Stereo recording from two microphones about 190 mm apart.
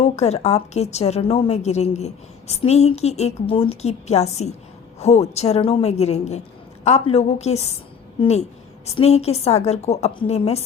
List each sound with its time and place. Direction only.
0.0 s a woman's voice: 35° left (ahead or behind)